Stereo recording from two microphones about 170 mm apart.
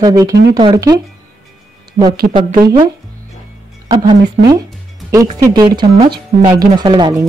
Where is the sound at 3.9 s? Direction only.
25° right (ahead or behind).